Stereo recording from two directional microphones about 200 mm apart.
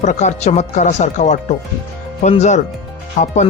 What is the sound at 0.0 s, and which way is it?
Speech, 35° left (ahead or behind).